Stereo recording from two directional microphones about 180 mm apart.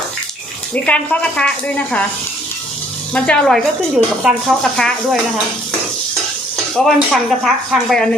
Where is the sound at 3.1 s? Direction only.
5° left (ahead or behind).